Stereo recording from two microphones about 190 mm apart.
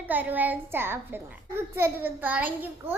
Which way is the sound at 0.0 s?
10° right (ahead or behind).